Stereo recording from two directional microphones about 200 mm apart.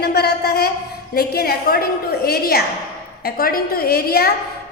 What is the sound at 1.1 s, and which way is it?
A woman's voice, 50° left (ahead or behind).